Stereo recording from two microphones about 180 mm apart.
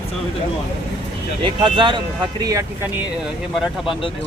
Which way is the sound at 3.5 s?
Centre (ahead or behind).